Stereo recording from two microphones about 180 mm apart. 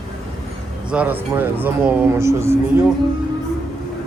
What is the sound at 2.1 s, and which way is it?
Speech, 15° right (ahead or behind).